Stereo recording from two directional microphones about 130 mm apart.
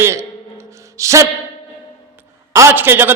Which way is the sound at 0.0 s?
20° right (ahead or behind).